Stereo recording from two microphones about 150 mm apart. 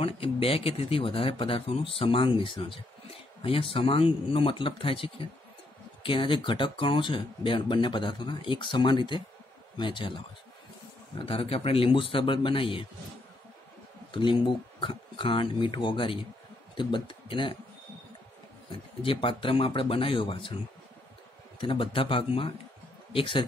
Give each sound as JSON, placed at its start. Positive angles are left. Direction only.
{"t": 0.0, "sound": "speech", "side_deg": 40}
{"t": 14.1, "sound": "speech", "side_deg": 30}
{"t": 19.0, "sound": "speech", "side_deg": 35}
{"t": 21.5, "sound": "speech", "side_deg": 35}